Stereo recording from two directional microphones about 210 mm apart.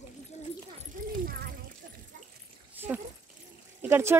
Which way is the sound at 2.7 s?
10° right (ahead or behind).